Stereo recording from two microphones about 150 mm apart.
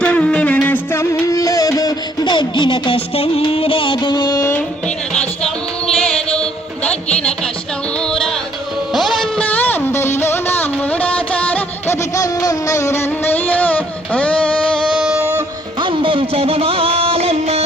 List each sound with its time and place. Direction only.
0.0 s music: 10° left (ahead or behind); by 4.5 s 25° left (ahead or behind)
5.1 s music: 5° left (ahead or behind)
8.0 s music: 5° left (ahead or behind)
12.1 s music: 25° left (ahead or behind); by 15.2 s centre (ahead or behind)
15.2 s music: 15° right (ahead or behind)
15.8 s music: 35° right (ahead or behind)